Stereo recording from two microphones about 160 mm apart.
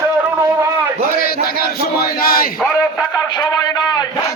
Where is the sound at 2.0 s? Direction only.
65° left (ahead or behind).